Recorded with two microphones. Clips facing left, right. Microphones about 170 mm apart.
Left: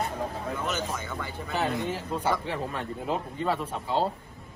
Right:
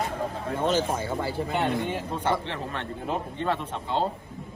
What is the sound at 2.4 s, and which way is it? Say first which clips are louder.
A man's voice: left 1 dB; 10° left (ahead or behind).